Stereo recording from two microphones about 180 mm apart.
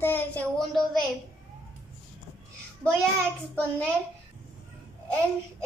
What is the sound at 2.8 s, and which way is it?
Speech, 5° left (ahead or behind).